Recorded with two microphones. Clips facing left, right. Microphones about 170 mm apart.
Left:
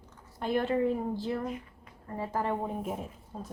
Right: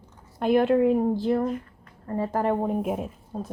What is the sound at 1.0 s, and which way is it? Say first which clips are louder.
A woman's voice: right 9 dB; 55° right (ahead or behind).